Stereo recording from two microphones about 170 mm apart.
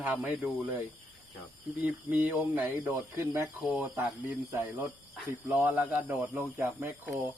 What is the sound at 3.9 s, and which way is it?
Speech, 15° right (ahead or behind).